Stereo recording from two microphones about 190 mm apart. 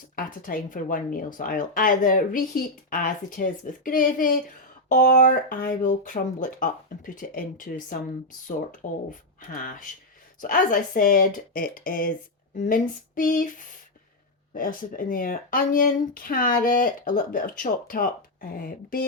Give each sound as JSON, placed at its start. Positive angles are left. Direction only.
{"t": 0.2, "sound": "a woman's voice", "side_deg": 45}
{"t": 9.0, "sound": "a woman's voice", "side_deg": 45}
{"t": 14.5, "sound": "a woman's voice", "side_deg": 45}